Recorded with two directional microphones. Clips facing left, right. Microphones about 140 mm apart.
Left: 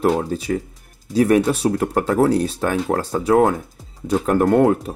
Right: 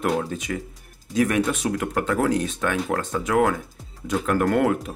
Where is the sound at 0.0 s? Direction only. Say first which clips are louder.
Left 5 dB; 35° left (ahead or behind).